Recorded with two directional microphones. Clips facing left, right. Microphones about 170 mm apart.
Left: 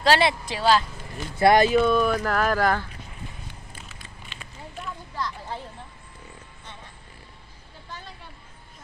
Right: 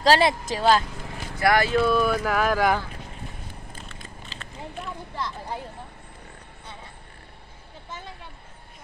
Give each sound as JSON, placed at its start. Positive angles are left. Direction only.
{"t": 0.0, "sound": "speech", "side_deg": -40}
{"t": 1.4, "sound": "speech", "side_deg": 20}
{"t": 1.8, "sound": "speech", "side_deg": -5}
{"t": 4.3, "sound": "a sound", "side_deg": -35}
{"t": 5.1, "sound": "speech", "side_deg": -20}